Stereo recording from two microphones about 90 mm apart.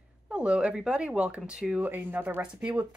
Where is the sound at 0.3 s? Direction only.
10° right (ahead or behind).